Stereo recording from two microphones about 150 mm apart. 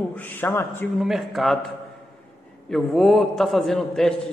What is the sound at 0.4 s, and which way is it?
Speech, 15° left (ahead or behind).